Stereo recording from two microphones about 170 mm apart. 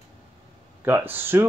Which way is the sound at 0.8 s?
15° right (ahead or behind).